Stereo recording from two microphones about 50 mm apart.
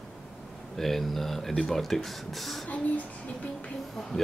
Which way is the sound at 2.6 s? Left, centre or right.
Left.